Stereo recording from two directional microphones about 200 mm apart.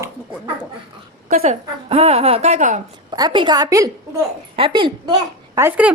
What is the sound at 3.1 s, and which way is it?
A woman's voice, 20° right (ahead or behind).